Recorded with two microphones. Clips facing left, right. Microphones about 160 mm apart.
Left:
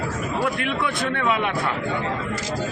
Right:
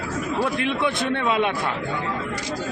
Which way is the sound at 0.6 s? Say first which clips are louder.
Right 1 dB; 20° right (ahead or behind).